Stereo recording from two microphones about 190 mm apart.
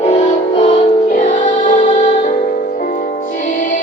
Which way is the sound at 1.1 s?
45° left (ahead or behind).